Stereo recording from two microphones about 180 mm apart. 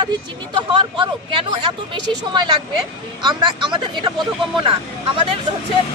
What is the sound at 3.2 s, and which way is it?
Speech, 25° right (ahead or behind).